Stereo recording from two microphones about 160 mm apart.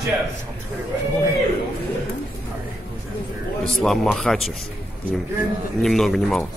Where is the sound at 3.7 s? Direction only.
Centre (ahead or behind).